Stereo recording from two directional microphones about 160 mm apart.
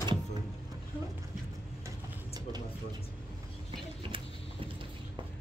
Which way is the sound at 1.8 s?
25° right (ahead or behind).